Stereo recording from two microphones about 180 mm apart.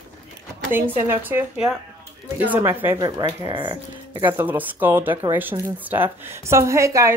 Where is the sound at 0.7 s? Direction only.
10° right (ahead or behind).